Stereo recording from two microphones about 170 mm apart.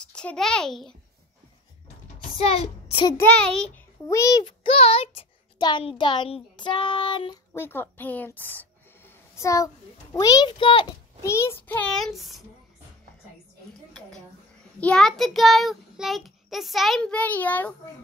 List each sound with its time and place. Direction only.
0.1 s child singing: 5° left (ahead or behind)
2.1 s a sound: 35° left (ahead or behind)
3.3 s a child's voice: 5° left (ahead or behind)
4.1 s a child's voice: 20° left (ahead or behind)
7.5 s a child's voice: 15° left (ahead or behind); by 11.0 s 30° left (ahead or behind)
11.2 s a child's voice: 15° left (ahead or behind); by 12.4 s centre (ahead or behind)
14.8 s child singing: 5° left (ahead or behind)